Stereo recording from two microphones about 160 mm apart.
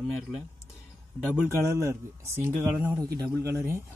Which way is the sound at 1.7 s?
20° right (ahead or behind).